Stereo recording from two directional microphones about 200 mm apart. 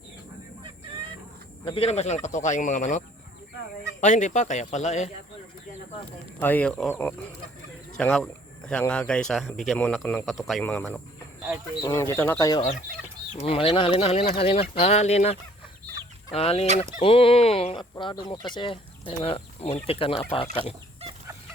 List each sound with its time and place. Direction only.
1.6 s speech: 30° left (ahead or behind)
4.0 s speech: 40° left (ahead or behind)
6.4 s speech: 10° left (ahead or behind)
10.2 s speech: centre (ahead or behind)
10.6 s speech: 10° left (ahead or behind)
13.3 s speech: 30° left (ahead or behind)